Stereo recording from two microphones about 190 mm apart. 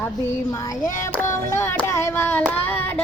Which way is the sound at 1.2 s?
15° left (ahead or behind).